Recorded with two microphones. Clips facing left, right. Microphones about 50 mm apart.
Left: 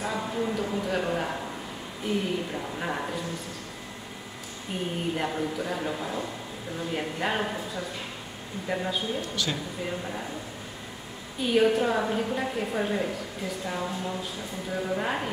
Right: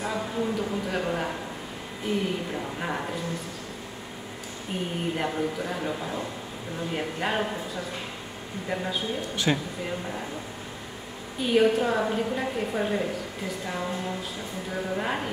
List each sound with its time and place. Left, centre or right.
0.0 s a man's voice: centre
5.1 s a woman's voice: centre
9.3 s speech: right
9.8 s a woman's voice: centre
11.4 s a woman's voice: centre